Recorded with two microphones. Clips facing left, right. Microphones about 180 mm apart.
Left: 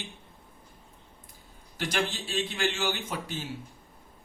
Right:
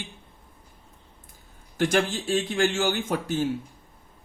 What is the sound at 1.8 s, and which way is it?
Speech, 50° right (ahead or behind).